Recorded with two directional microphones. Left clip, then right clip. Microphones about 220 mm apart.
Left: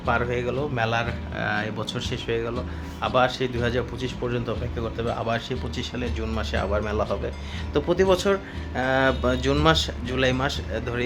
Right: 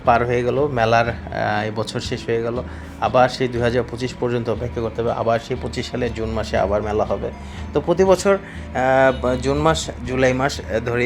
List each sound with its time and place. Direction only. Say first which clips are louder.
0.0 s a man's voice: right 8 dB; 25° right (ahead or behind)